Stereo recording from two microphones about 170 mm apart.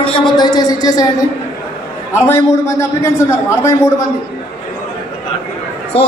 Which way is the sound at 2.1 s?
15° left (ahead or behind).